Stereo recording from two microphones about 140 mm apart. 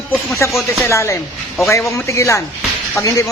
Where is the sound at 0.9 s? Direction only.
20° left (ahead or behind).